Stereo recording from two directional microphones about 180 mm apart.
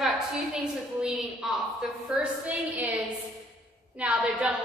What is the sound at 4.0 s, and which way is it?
Speech, 5° right (ahead or behind).